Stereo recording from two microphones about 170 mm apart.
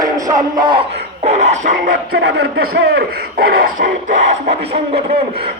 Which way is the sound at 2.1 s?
75° right (ahead or behind).